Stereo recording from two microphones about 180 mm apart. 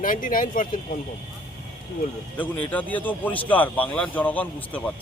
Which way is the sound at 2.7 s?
10° left (ahead or behind).